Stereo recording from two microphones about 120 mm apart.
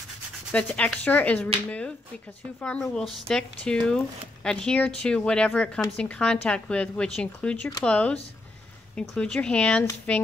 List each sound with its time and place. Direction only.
0.5 s speech: 10° left (ahead or behind)